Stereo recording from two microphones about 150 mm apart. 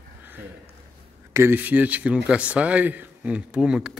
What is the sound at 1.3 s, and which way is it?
Speech, 15° right (ahead or behind).